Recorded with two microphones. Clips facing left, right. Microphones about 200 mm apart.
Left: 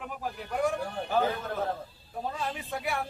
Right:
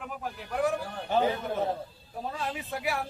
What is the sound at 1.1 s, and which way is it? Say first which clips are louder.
Speech: right 2 dB; 20° right (ahead or behind).